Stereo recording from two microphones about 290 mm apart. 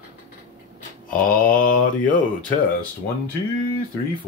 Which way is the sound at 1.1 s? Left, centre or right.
Left.